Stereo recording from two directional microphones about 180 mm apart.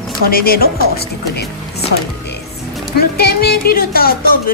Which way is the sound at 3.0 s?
60° left (ahead or behind).